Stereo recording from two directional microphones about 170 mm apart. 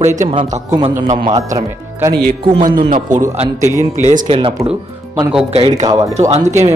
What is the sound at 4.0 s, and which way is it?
Speech, 50° right (ahead or behind).